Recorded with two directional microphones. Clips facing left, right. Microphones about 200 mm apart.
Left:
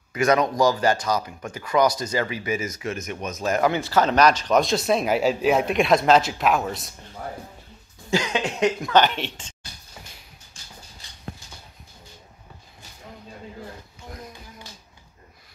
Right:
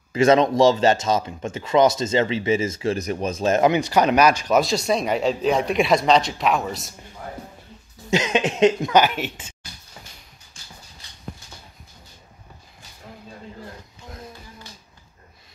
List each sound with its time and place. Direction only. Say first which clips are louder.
0.1 s speech: right 4 dB; 25° right (ahead or behind); by 6.9 s centre (ahead or behind)
8.1 s speech: right 3 dB; 20° right (ahead or behind)
8.9 s speech: right 1 dB; 10° right (ahead or behind)